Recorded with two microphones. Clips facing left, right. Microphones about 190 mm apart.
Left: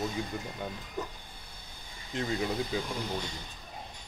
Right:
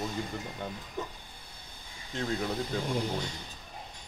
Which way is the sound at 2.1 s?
5° left (ahead or behind).